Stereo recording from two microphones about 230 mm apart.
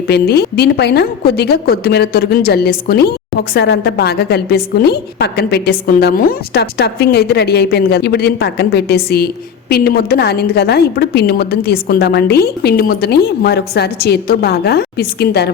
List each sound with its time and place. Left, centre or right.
0.1 s a woman's voice: left